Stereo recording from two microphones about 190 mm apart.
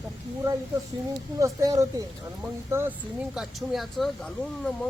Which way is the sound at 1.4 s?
15° right (ahead or behind).